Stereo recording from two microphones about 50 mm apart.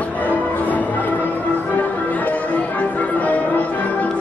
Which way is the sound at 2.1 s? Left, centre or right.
Left.